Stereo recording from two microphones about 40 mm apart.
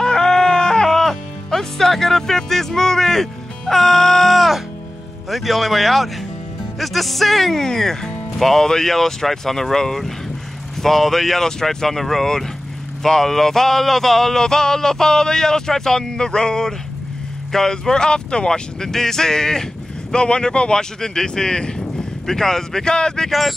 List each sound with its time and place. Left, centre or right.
0.0 s music: centre
5.3 s a man's voice: centre